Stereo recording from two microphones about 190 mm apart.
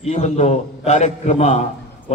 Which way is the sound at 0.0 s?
35° left (ahead or behind).